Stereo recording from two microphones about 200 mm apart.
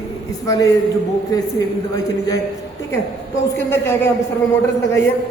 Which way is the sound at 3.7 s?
10° left (ahead or behind).